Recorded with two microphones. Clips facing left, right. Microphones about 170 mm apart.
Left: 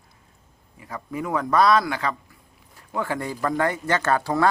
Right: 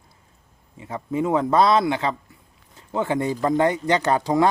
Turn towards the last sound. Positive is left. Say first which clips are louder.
# right 2 dB
turn(degrees=-20)  # may be behind; listen again after turning